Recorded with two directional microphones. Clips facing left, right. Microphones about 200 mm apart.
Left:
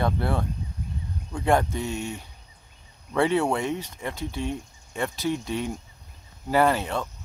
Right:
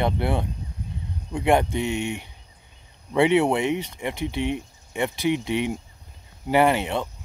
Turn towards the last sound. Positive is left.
turn(degrees=-20)  # may be behind; listen again after turning